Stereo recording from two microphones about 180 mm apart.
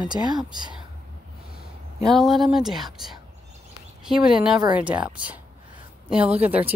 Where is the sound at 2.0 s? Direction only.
Centre (ahead or behind).